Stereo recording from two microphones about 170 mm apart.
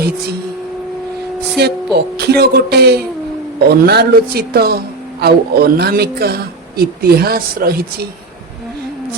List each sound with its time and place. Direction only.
1.6 s speech: 75° right (ahead or behind)